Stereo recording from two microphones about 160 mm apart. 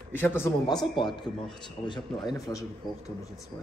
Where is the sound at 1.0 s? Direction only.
30° left (ahead or behind).